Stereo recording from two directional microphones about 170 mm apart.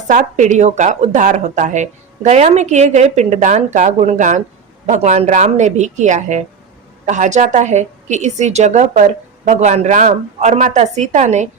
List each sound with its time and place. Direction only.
0.1 s a woman's voice: 45° right (ahead or behind)